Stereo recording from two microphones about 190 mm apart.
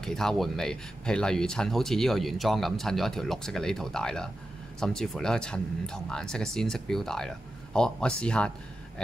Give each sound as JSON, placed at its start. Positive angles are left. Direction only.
{"t": 0.0, "sound": "speech", "side_deg": 0}